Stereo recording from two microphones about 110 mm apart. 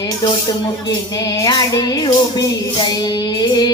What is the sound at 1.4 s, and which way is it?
Music, 35° left (ahead or behind).